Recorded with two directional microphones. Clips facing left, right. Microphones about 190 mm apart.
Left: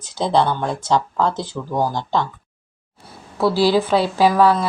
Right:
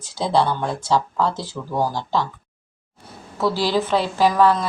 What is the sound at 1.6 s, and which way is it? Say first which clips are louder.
Speech: left 3 dB; 20° left (ahead or behind).